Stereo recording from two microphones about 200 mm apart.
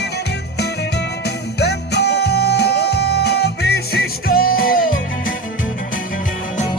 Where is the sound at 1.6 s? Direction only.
55° left (ahead or behind).